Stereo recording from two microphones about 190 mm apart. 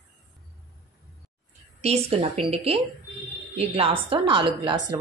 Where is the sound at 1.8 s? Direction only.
35° right (ahead or behind).